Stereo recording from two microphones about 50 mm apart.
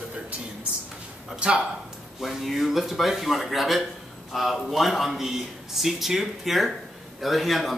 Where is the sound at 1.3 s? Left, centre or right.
Right.